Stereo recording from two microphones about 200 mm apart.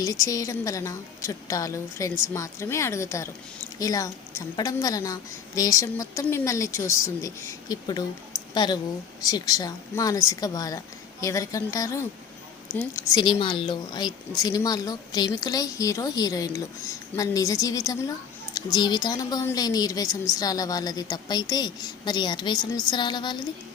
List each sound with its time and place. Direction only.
0.0 s a woman's voice: 15° left (ahead or behind)